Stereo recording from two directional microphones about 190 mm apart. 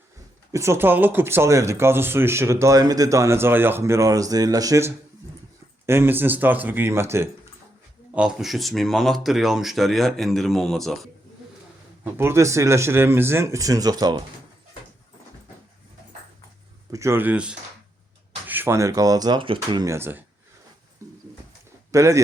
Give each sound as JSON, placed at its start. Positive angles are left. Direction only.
{"t": 0.5, "sound": "speech", "side_deg": -15}
{"t": 12.1, "sound": "speech", "side_deg": -15}
{"t": 16.9, "sound": "speech", "side_deg": -15}
{"t": 21.0, "sound": "pigeon", "side_deg": -15}
{"t": 21.9, "sound": "speech", "side_deg": -15}